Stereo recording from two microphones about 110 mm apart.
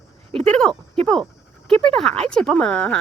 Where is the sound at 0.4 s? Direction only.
10° left (ahead or behind).